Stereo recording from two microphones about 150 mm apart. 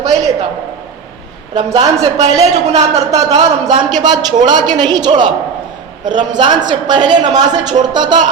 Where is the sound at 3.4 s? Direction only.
30° right (ahead or behind).